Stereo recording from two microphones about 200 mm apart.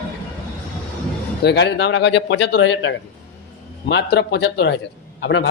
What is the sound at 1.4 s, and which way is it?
A man's voice, 60° left (ahead or behind).